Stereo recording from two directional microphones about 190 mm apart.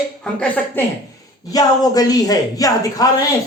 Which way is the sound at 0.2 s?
5° left (ahead or behind).